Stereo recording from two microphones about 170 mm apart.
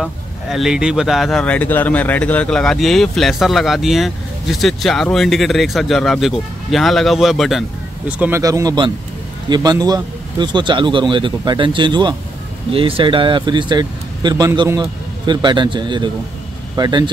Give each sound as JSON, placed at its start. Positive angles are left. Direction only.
{"t": 0.0, "sound": "speech", "side_deg": 0}
{"t": 8.1, "sound": "speech", "side_deg": -10}